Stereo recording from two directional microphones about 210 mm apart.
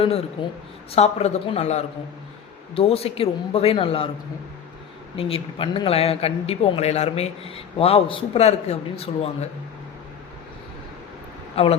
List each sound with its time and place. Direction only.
0.9 s speech: 30° left (ahead or behind)
5.1 s speech: 25° left (ahead or behind)
11.5 s speech: 30° left (ahead or behind)